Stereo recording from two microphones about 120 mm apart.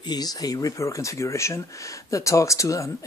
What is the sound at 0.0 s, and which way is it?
Speech, 35° left (ahead or behind).